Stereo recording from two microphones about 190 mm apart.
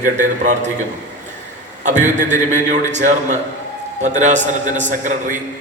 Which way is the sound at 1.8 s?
40° right (ahead or behind).